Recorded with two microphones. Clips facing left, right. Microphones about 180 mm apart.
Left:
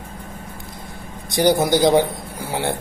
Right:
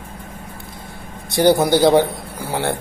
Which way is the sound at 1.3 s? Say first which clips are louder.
Right 2 dB; 20° left (ahead or behind).